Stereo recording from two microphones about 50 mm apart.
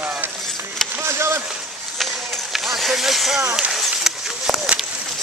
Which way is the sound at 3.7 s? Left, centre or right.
Centre.